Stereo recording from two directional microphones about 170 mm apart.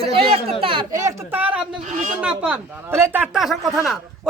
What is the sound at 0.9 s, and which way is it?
Speech, 15° right (ahead or behind).